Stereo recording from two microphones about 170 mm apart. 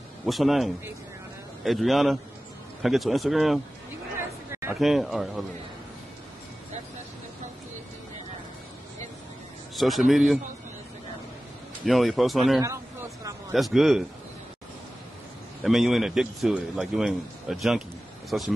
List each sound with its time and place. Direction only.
0.2 s a man's voice: centre (ahead or behind)
4.7 s a man's voice: centre (ahead or behind)
9.8 s a man's voice: centre (ahead or behind)
11.8 s a man's voice: centre (ahead or behind)
12.6 s a sound: 15° right (ahead or behind)
13.5 s a man's voice: centre (ahead or behind)
15.6 s a man's voice: centre (ahead or behind)